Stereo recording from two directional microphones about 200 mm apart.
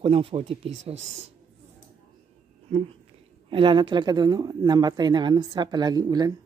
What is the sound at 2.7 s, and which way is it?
Speech, 30° right (ahead or behind).